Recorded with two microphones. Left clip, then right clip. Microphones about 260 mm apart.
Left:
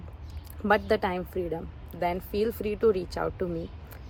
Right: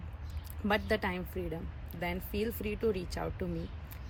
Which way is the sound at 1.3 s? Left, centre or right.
Left.